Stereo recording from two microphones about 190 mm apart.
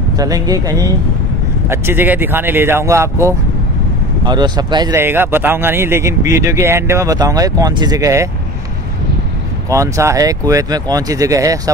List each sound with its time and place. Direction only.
0.2 s speech: 20° right (ahead or behind)
9.7 s speech: 15° right (ahead or behind)